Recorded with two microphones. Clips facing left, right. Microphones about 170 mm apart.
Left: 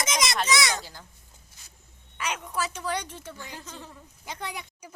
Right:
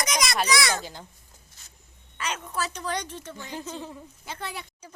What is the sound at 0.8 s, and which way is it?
Speech, 20° right (ahead or behind).